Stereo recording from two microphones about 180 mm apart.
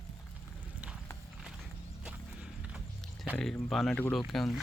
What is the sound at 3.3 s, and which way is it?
Speech, centre (ahead or behind).